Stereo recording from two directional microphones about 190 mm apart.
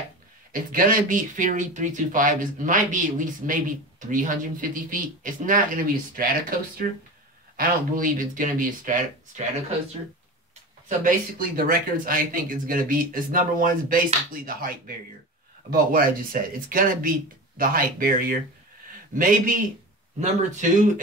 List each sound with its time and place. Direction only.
0.5 s speech: 45° right (ahead or behind)
7.5 s speech: 45° right (ahead or behind)
10.9 s speech: 45° right (ahead or behind)
15.7 s speech: 50° right (ahead or behind)